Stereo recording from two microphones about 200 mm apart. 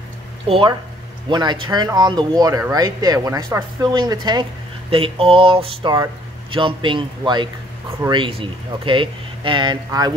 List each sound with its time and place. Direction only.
0.5 s speech: 25° right (ahead or behind)